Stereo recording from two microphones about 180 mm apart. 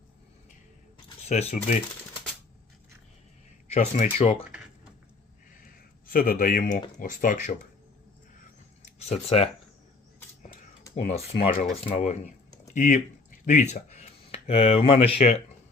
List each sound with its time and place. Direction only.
1.3 s speech: 35° left (ahead or behind)
3.7 s speech: 45° left (ahead or behind)
4.2 s speech: 30° left (ahead or behind)
6.1 s speech: 55° left (ahead or behind)
8.8 s a sound: 35° left (ahead or behind)
10.9 s speech: 35° left (ahead or behind)
12.6 s a sound: 45° left (ahead or behind)
13.4 s speech: 40° left (ahead or behind)